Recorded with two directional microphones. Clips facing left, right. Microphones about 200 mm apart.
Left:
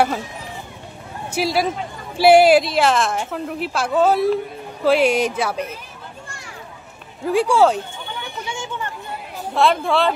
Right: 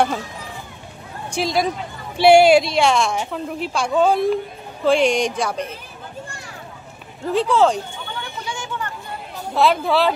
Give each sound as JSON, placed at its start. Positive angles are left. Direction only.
{"t": 1.3, "sound": "a woman's voice", "side_deg": 5}
{"t": 7.2, "sound": "speech", "side_deg": 10}
{"t": 8.5, "sound": "a sound", "side_deg": 25}
{"t": 9.5, "sound": "a woman's voice", "side_deg": 0}